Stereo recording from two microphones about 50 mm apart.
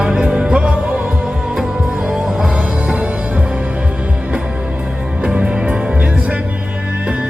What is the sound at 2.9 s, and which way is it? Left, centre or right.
Music, right.